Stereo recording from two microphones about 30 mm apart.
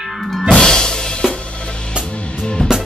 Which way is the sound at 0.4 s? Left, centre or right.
Left.